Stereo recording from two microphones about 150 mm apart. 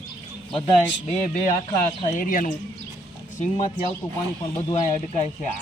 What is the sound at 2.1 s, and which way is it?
Speech, 65° left (ahead or behind).